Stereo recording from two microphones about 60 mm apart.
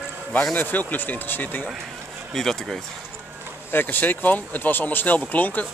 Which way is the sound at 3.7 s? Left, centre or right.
Left.